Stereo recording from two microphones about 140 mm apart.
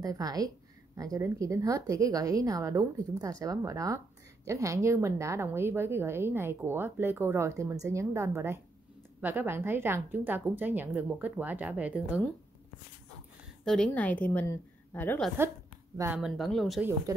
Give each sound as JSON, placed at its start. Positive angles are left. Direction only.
{"t": 0.0, "sound": "a woman's voice", "side_deg": -25}
{"t": 13.7, "sound": "a woman's voice", "side_deg": 10}
{"t": 15.4, "sound": "a woman's voice", "side_deg": -15}
{"t": 16.2, "sound": "speech", "side_deg": 0}